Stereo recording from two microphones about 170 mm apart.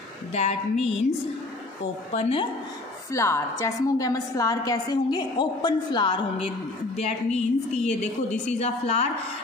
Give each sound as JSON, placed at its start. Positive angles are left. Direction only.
{"t": 0.3, "sound": "a woman's voice", "side_deg": 40}
{"t": 2.1, "sound": "a woman's voice", "side_deg": 35}
{"t": 3.1, "sound": "a woman's voice", "side_deg": 15}